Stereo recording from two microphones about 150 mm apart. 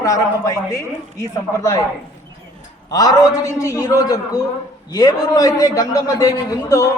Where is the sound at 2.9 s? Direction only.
25° left (ahead or behind).